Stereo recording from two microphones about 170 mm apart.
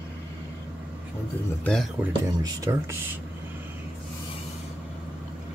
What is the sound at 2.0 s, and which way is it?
Speech, 10° right (ahead or behind).